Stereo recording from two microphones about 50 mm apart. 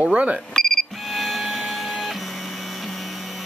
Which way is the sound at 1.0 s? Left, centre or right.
Centre.